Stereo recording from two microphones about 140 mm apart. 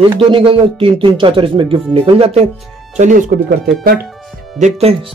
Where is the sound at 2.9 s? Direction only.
70° right (ahead or behind).